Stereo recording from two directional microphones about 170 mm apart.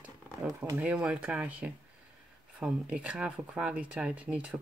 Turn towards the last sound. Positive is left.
turn(degrees=-5)  # may be behind; listen again after turning